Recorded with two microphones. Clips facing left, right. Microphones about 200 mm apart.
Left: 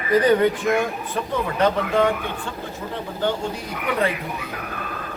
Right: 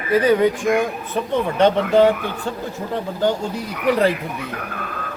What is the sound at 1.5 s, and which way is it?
Speech, 30° right (ahead or behind).